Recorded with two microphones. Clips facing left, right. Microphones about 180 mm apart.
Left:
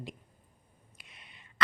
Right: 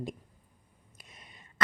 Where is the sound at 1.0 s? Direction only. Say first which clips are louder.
Right 4 dB; 45° right (ahead or behind).